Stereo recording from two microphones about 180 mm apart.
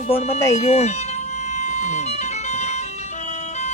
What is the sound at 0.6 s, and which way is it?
Speech, 35° left (ahead or behind).